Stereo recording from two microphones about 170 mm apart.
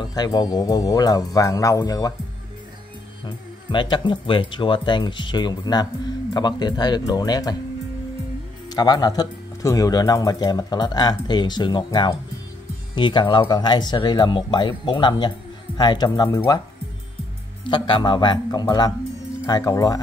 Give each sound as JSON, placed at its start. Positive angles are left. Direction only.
{"t": 0.0, "sound": "speech", "side_deg": 25}
{"t": 3.3, "sound": "speech", "side_deg": 25}
{"t": 8.6, "sound": "speech", "side_deg": 25}
{"t": 17.6, "sound": "speech", "side_deg": 30}